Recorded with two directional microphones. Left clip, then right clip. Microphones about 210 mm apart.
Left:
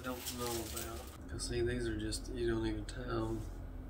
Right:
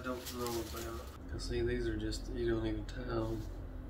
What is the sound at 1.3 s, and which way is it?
Speech, 10° left (ahead or behind).